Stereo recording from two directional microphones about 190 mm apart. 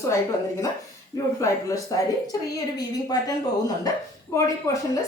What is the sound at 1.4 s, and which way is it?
A woman's voice, 15° left (ahead or behind).